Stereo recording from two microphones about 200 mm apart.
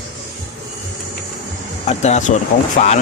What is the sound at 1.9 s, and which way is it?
Speech, 35° left (ahead or behind).